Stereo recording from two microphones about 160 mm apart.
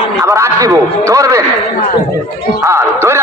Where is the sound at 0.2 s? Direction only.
20° right (ahead or behind).